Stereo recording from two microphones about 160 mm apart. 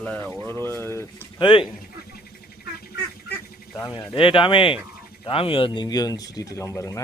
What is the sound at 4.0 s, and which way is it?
Speech, 30° left (ahead or behind).